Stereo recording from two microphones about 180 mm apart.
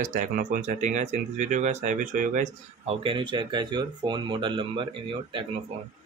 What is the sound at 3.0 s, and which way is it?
Speech, 30° right (ahead or behind).